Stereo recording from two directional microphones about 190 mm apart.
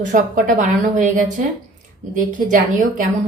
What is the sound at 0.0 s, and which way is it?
A woman's voice, 45° right (ahead or behind).